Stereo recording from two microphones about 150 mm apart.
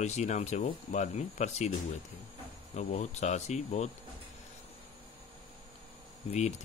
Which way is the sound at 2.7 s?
50° left (ahead or behind).